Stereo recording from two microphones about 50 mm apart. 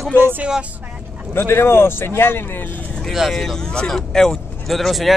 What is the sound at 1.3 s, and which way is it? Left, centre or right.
Speech, left.